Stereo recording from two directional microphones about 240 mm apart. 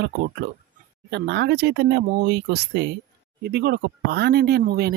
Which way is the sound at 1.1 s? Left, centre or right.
Right.